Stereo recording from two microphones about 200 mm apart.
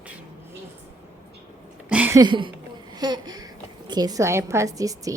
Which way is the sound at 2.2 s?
25° right (ahead or behind).